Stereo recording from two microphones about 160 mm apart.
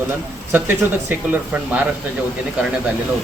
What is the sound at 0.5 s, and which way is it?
Speech, 10° right (ahead or behind).